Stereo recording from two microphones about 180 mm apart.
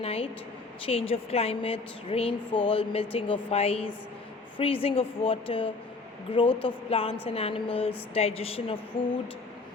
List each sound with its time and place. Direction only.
0.0 s speech: 35° left (ahead or behind)